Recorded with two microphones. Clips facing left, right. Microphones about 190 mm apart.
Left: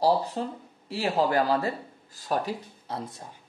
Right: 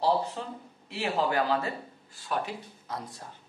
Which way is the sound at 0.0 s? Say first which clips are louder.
Left 3 dB; 35° left (ahead or behind).